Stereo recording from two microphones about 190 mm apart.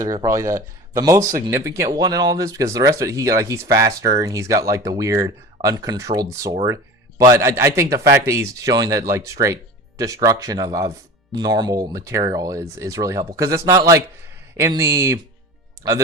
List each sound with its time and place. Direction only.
0.0 s speech: 15° right (ahead or behind)